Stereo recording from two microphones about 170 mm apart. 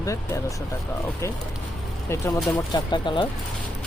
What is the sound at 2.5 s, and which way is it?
Speech, 25° left (ahead or behind).